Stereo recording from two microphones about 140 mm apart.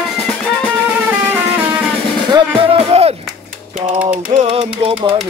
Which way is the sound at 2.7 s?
45° right (ahead or behind).